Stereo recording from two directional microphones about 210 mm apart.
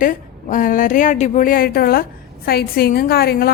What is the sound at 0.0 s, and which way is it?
A woman's voice, 40° left (ahead or behind).